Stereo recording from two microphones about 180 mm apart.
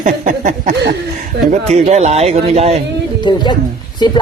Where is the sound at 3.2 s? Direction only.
25° left (ahead or behind).